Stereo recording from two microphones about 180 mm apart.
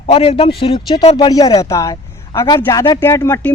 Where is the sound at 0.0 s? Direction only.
30° left (ahead or behind).